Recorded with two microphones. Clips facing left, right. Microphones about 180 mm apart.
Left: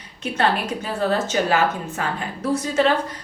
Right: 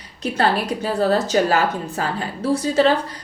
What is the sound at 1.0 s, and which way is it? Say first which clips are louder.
Speech: right 3 dB; 40° right (ahead or behind).